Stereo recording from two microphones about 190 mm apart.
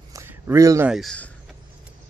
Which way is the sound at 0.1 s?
15° right (ahead or behind).